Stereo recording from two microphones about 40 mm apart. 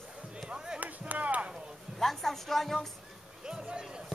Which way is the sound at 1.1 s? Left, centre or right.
Right.